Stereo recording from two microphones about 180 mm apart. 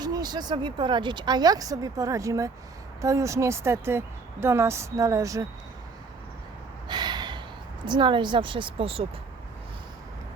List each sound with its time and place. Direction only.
0.0 s speech: 20° right (ahead or behind)
6.8 s gasp: 25° right (ahead or behind)
7.9 s speech: 25° right (ahead or behind)